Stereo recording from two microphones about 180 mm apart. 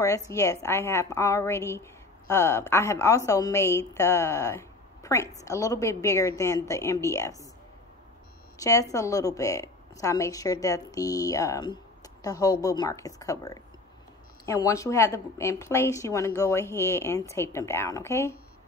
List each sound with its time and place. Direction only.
0.3 s a woman's voice: 15° left (ahead or behind)
8.5 s a woman's voice: 20° left (ahead or behind)